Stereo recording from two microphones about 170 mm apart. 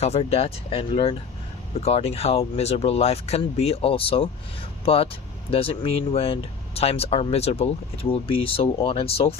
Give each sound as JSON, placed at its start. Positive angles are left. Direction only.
{"t": 0.0, "sound": "speech", "side_deg": 40}